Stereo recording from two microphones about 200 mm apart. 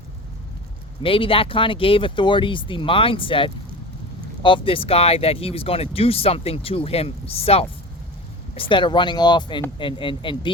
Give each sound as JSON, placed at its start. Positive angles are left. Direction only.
{"t": 1.0, "sound": "speech", "side_deg": 25}